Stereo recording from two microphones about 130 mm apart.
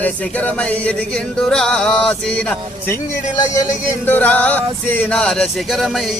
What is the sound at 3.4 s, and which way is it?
Speech, 25° left (ahead or behind).